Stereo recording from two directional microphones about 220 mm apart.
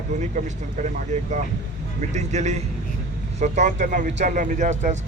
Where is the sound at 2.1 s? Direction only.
30° right (ahead or behind).